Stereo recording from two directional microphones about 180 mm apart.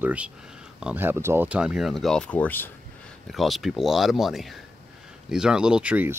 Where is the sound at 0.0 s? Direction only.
5° right (ahead or behind).